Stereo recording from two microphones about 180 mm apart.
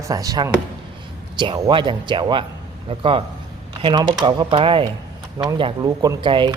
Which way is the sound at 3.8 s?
30° right (ahead or behind).